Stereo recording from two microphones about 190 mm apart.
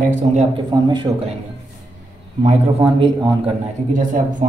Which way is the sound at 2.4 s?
30° right (ahead or behind).